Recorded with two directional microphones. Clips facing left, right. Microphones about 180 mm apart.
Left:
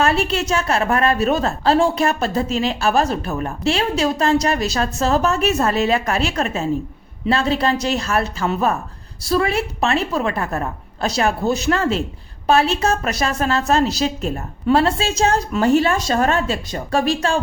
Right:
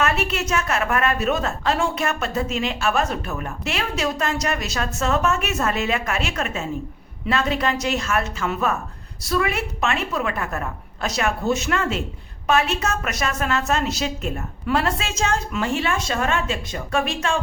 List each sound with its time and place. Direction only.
0.0 s a woman's voice: 30° left (ahead or behind)